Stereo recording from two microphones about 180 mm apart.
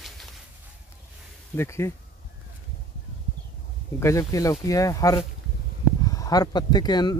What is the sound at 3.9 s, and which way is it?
Speech, 15° left (ahead or behind).